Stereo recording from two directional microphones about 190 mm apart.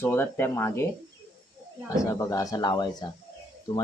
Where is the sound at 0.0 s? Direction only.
10° left (ahead or behind).